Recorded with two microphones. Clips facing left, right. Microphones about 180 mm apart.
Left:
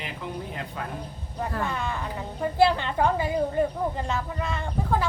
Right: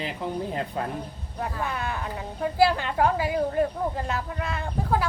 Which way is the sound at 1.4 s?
5° right (ahead or behind).